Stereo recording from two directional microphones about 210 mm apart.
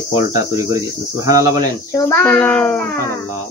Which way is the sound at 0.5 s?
15° right (ahead or behind).